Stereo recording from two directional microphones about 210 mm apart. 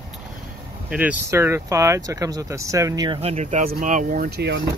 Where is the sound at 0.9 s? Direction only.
5° right (ahead or behind); by 4.5 s 40° right (ahead or behind).